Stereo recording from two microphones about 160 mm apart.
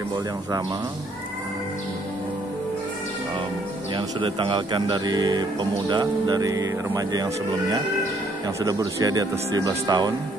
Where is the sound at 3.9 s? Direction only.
30° right (ahead or behind).